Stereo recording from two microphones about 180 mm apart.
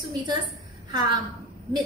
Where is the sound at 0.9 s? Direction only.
25° right (ahead or behind).